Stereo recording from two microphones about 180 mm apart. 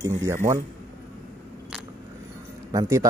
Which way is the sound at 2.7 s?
20° right (ahead or behind).